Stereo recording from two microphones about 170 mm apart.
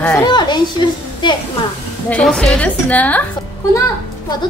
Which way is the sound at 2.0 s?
5° left (ahead or behind).